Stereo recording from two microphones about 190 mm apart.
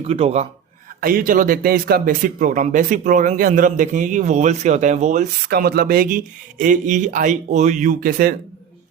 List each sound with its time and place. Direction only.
0.0 s speech: 30° right (ahead or behind)
1.0 s speech: 45° right (ahead or behind)
5.5 s speech: 55° right (ahead or behind)